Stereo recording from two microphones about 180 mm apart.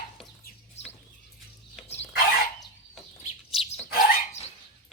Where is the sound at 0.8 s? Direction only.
35° left (ahead or behind).